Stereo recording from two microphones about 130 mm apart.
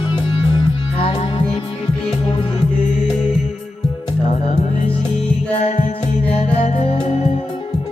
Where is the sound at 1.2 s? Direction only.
60° left (ahead or behind).